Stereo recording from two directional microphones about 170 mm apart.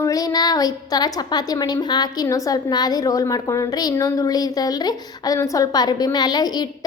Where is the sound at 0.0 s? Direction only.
20° left (ahead or behind).